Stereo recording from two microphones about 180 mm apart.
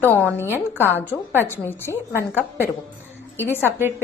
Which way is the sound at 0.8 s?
10° left (ahead or behind).